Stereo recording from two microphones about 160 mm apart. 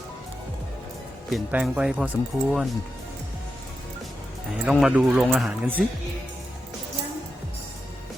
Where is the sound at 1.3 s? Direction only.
5° right (ahead or behind).